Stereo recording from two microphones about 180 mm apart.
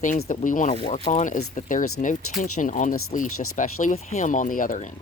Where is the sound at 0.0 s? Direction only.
45° left (ahead or behind).